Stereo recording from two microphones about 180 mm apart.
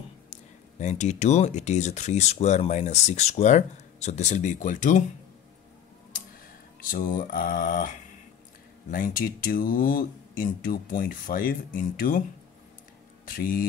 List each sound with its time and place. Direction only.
0.3 s speech: 40° left (ahead or behind)
6.8 s speech: 50° left (ahead or behind)
8.9 s speech: 50° left (ahead or behind)
13.2 s speech: 50° left (ahead or behind)